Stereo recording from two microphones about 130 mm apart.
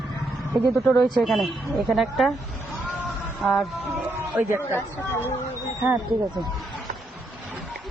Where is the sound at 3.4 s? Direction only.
Centre (ahead or behind).